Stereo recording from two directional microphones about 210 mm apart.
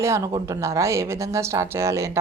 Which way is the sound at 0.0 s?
15° right (ahead or behind).